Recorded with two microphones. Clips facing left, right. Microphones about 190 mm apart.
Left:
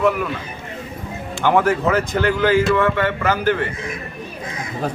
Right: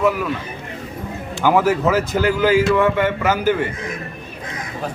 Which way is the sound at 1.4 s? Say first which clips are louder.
Right 1 dB; 5° right (ahead or behind).